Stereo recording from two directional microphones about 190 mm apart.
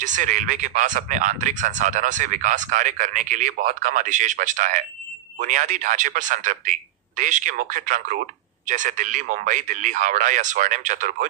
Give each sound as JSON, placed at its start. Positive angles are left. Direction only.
{"t": 0.0, "sound": "speech", "side_deg": -40}